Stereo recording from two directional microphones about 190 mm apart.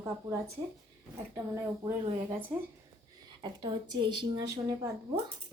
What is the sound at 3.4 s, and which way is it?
Speech, 20° right (ahead or behind).